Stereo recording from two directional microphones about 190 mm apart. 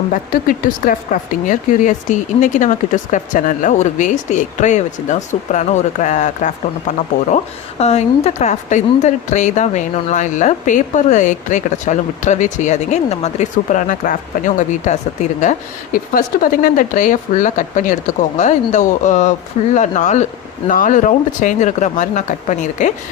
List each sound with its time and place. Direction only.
0.1 s speech: 45° left (ahead or behind)